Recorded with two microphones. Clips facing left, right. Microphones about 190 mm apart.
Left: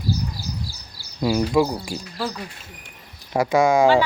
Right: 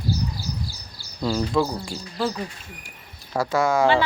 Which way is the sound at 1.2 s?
10° left (ahead or behind).